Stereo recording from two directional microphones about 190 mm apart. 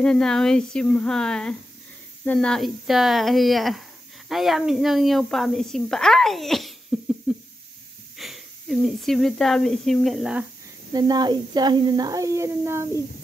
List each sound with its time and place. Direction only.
0.0 s a woman's voice: 5° left (ahead or behind)
6.9 s cough: 5° right (ahead or behind)
8.2 s speech: centre (ahead or behind)
10.9 s speech: 20° right (ahead or behind)